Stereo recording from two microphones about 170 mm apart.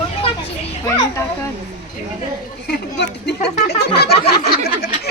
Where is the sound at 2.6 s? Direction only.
75° left (ahead or behind).